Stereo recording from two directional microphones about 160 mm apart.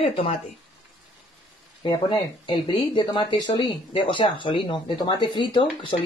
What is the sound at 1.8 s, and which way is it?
Speech, 30° left (ahead or behind).